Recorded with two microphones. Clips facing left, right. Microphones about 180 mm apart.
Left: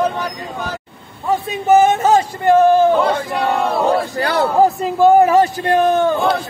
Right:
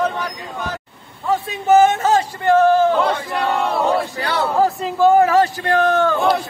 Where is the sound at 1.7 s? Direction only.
15° left (ahead or behind).